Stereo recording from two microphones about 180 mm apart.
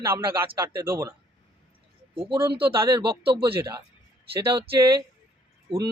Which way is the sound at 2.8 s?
30° right (ahead or behind).